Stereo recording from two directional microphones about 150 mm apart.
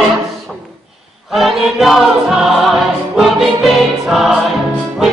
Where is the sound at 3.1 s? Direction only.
Centre (ahead or behind).